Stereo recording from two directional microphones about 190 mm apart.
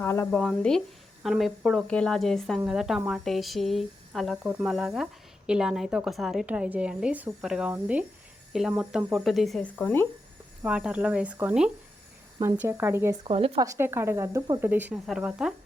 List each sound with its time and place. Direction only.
0.0 s a woman's voice: 15° left (ahead or behind)
10.6 s speech: 5° right (ahead or behind)
13.2 s speech: 30° right (ahead or behind)
13.7 s a woman's voice: 10° right (ahead or behind)